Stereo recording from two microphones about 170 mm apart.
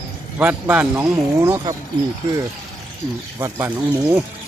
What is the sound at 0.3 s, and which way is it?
A man's voice, 10° right (ahead or behind).